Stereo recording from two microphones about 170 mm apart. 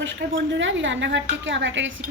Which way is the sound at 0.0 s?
90° right.